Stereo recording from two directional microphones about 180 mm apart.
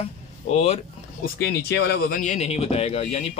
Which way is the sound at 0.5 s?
35° left (ahead or behind).